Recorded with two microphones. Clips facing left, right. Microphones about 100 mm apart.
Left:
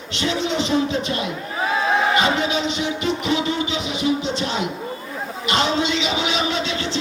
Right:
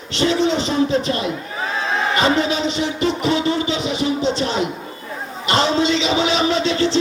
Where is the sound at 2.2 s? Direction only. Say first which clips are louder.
Right 2 dB; 35° right (ahead or behind).